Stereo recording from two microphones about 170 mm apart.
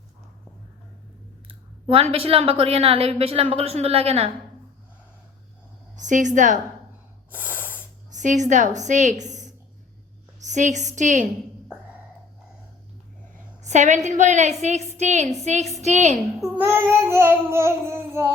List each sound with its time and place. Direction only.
1.9 s a woman's voice: 35° right (ahead or behind)
6.0 s a woman's voice: 45° right (ahead or behind)
7.3 s snort: 10° right (ahead or behind)
8.1 s a woman's voice: 45° right (ahead or behind)
13.6 s a woman's voice: 45° right (ahead or behind)
16.6 s child singing: 15° right (ahead or behind)